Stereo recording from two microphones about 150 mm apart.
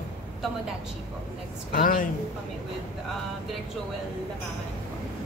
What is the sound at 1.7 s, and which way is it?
Speech, 70° left (ahead or behind).